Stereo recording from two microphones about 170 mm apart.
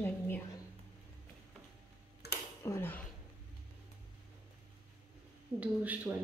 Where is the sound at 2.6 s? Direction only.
15° left (ahead or behind).